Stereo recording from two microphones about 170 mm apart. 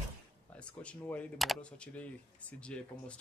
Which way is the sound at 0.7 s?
10° left (ahead or behind).